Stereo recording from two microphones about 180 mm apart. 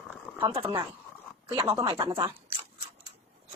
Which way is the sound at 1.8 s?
25° right (ahead or behind).